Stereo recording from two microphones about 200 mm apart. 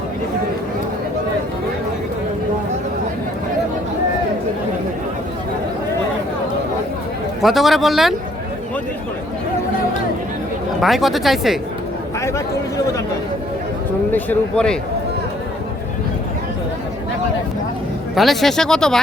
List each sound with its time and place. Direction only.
7.4 s speech: centre (ahead or behind)
10.8 s speech: centre (ahead or behind)
12.2 s speech: 15° left (ahead or behind)
14.1 s speech: 5° left (ahead or behind)
18.1 s speech: centre (ahead or behind)